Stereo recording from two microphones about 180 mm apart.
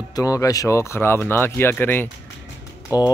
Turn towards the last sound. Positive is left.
turn(degrees=20)  # may be behind; listen again after turning